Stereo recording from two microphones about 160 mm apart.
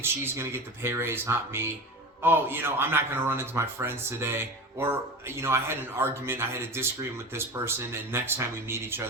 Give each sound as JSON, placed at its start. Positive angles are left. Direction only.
{"t": 0.0, "sound": "a man's voice", "side_deg": -15}